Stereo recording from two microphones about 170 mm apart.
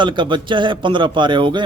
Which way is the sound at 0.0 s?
30° right (ahead or behind).